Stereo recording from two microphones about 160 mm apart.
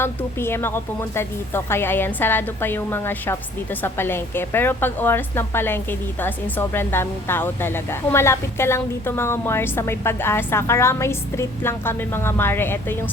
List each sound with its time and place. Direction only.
0.0 s a woman's voice: 15° left (ahead or behind)